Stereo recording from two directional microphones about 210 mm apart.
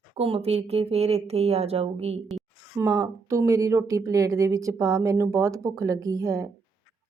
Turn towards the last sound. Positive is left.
turn(degrees=-15)  # may be behind; listen again after turning